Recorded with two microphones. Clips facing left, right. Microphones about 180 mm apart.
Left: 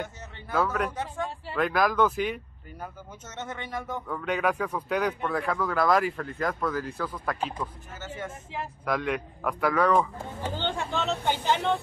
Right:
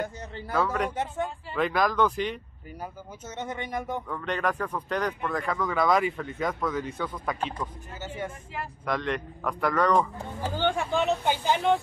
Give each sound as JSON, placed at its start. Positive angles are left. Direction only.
{"t": 0.5, "sound": "speech", "side_deg": 0}
{"t": 2.8, "sound": "speech", "side_deg": -10}
{"t": 4.1, "sound": "speech", "side_deg": 5}
{"t": 8.8, "sound": "speech", "side_deg": 5}
{"t": 10.4, "sound": "speech", "side_deg": -10}